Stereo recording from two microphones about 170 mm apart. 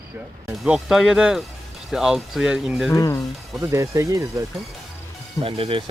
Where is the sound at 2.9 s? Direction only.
20° left (ahead or behind).